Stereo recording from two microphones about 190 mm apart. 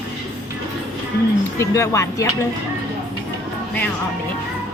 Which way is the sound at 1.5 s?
15° left (ahead or behind).